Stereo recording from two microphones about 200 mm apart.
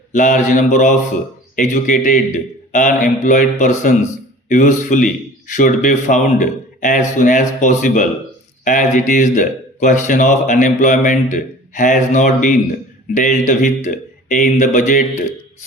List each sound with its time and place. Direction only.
0.1 s speech: 40° left (ahead or behind)